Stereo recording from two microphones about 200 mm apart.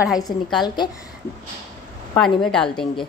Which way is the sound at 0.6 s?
20° left (ahead or behind).